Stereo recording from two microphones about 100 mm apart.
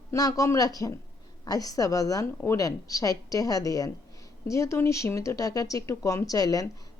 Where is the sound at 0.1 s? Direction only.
35° left (ahead or behind).